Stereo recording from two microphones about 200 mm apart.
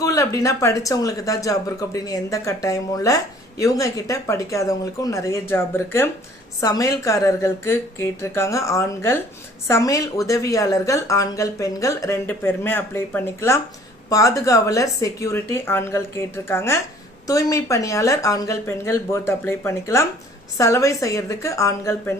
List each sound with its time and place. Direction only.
0.0 s a woman's voice: 15° left (ahead or behind)